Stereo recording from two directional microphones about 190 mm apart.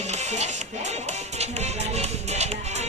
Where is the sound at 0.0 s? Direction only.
35° right (ahead or behind).